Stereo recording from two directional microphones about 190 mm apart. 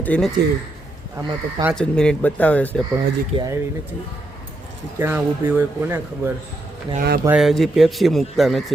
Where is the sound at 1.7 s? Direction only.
5° left (ahead or behind).